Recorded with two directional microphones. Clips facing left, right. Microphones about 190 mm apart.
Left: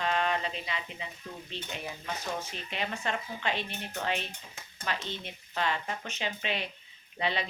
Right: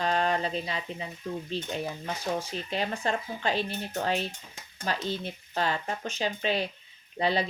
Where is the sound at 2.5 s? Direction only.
35° right (ahead or behind).